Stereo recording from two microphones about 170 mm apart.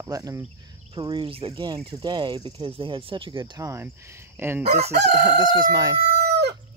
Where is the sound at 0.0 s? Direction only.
20° right (ahead or behind).